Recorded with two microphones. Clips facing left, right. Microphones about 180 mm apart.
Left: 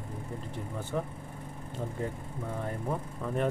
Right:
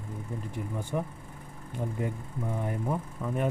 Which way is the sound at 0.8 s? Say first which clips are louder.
Even; 15° right (ahead or behind).